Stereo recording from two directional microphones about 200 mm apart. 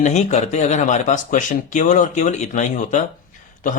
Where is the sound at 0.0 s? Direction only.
35° left (ahead or behind).